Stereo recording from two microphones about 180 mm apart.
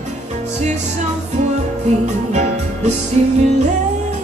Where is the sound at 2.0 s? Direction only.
40° right (ahead or behind).